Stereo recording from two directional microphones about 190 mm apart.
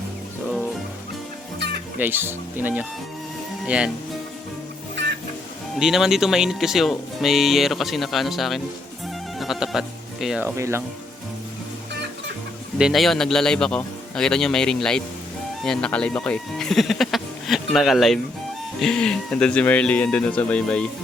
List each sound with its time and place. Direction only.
1.5 s music: 65° right (ahead or behind)
2.0 s speech: 10° right (ahead or behind)
5.8 s speech: centre (ahead or behind)
10.6 s speech: 15° right (ahead or behind)
12.8 s speech: centre (ahead or behind)